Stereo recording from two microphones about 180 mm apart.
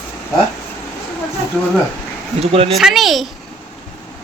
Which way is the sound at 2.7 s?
Centre (ahead or behind).